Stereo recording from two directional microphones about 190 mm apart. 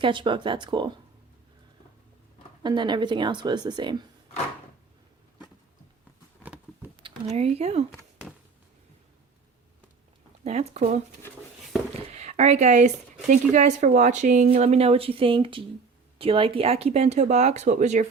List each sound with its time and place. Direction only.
0.0 s a woman's voice: 25° right (ahead or behind)
2.6 s a woman's voice: 25° right (ahead or behind)
6.4 s patter: 10° right (ahead or behind)
7.0 s speech: 35° right (ahead or behind)
10.4 s speech: 35° right (ahead or behind)